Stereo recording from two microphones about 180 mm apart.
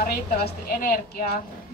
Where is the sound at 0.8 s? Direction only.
55° left (ahead or behind).